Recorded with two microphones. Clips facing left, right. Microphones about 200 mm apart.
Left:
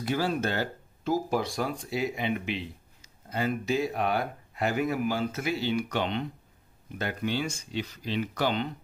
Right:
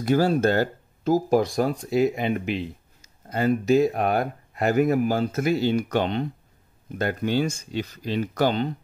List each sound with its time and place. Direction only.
0.0 s speech: 45° right (ahead or behind)